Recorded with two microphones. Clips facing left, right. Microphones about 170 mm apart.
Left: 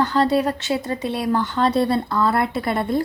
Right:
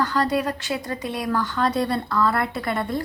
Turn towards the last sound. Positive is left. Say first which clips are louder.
# left 4 dB
turn(degrees=30)  # may be behind; listen again after turning